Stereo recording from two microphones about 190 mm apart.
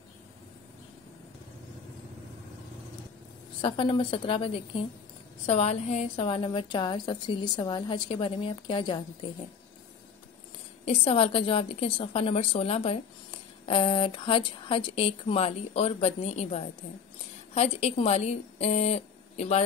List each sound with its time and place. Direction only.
3.6 s a woman's voice: 25° left (ahead or behind)
10.9 s a woman's voice: 30° left (ahead or behind)